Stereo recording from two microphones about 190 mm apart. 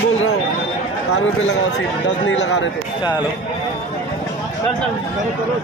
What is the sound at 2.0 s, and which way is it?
Speech, 65° left (ahead or behind).